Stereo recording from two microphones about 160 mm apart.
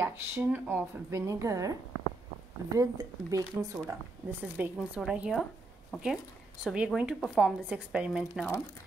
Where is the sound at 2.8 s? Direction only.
20° right (ahead or behind).